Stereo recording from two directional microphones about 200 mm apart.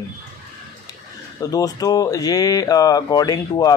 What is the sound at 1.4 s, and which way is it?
Speech, 20° left (ahead or behind).